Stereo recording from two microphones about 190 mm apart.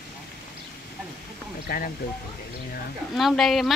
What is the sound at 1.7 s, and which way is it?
Speech, 55° left (ahead or behind).